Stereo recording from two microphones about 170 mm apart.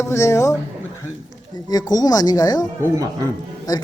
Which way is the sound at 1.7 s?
20° left (ahead or behind).